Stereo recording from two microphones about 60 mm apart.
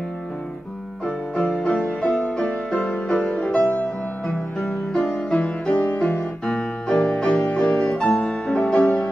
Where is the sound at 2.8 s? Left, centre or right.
Centre.